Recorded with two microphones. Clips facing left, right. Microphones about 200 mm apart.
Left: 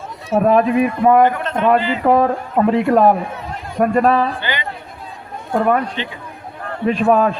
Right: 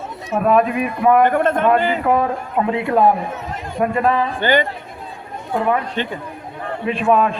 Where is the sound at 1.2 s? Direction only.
50° right (ahead or behind).